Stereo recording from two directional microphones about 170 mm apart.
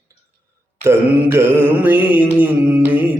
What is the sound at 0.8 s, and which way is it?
Mantra, 15° right (ahead or behind).